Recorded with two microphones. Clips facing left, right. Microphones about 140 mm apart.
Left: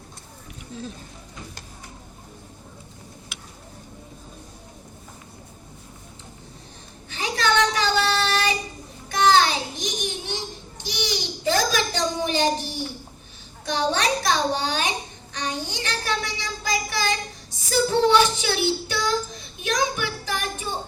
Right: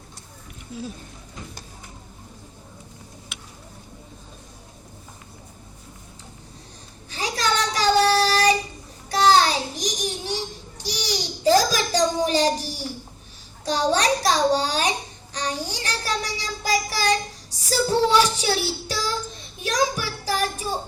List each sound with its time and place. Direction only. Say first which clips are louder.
0.7 s speech: right 2 dB; 10° right (ahead or behind)
7.1 s child singing: left 1 dB; 35° right (ahead or behind)
9.0 s a sound: right 1 dB; 35° right (ahead or behind)
13.7 s child singing: right 2 dB; 35° right (ahead or behind)